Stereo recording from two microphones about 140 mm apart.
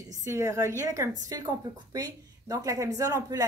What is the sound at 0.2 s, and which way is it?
A woman's voice, 20° right (ahead or behind).